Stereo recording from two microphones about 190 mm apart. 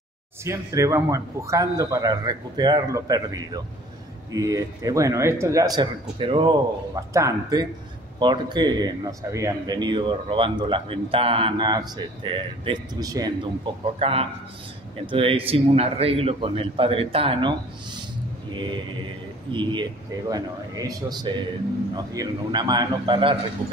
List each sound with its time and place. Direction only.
0.4 s a man's voice: 15° right (ahead or behind)
13.9 s a man's voice: 30° right (ahead or behind)